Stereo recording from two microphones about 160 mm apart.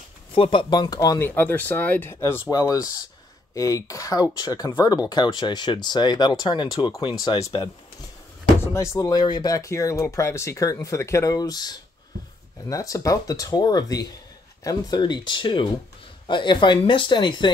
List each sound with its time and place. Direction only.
0.3 s speech: 30° left (ahead or behind)
1.3 s speech: 10° left (ahead or behind)
8.7 s speech: 20° left (ahead or behind)